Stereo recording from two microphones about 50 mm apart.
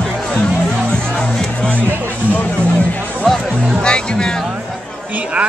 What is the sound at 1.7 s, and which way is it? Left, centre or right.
Speech, right.